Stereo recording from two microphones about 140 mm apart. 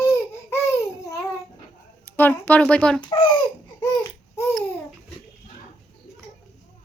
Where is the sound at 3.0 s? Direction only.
35° left (ahead or behind).